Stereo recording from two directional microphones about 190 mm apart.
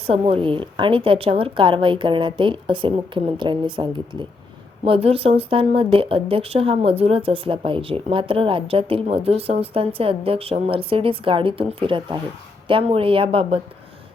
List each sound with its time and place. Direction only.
0.1 s speech: 30° right (ahead or behind)